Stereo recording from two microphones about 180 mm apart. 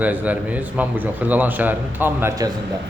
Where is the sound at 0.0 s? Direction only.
10° right (ahead or behind).